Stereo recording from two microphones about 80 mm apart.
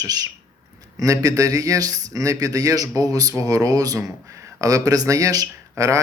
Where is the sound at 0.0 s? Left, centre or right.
Right.